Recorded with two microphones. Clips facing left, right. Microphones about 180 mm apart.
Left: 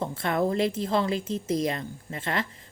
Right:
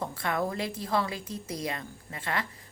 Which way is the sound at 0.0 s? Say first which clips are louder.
Left 4 dB; 25° left (ahead or behind).